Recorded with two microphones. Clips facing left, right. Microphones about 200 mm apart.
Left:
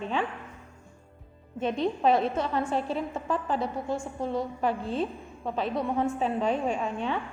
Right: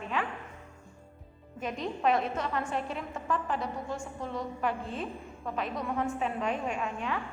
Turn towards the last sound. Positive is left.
turn(degrees=30)  # may be behind; listen again after turning